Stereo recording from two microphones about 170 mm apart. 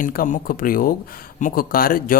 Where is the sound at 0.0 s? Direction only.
55° left (ahead or behind).